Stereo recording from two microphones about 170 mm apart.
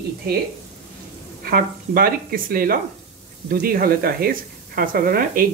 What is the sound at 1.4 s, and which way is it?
Speech, 60° right (ahead or behind).